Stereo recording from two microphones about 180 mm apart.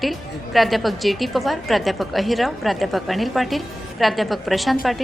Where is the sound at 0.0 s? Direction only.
Centre (ahead or behind).